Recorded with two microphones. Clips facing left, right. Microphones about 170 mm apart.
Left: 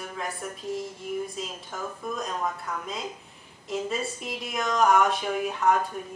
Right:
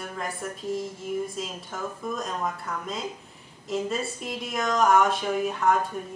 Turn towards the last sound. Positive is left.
turn(degrees=0)  # may be behind; listen again after turning